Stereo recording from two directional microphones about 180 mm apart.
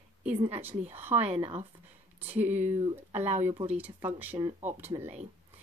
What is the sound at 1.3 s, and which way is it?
Speech, 35° right (ahead or behind).